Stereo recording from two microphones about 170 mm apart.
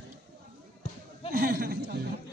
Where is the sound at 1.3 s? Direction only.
60° right (ahead or behind).